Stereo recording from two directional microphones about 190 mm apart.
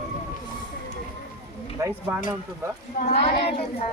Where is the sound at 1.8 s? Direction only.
15° right (ahead or behind).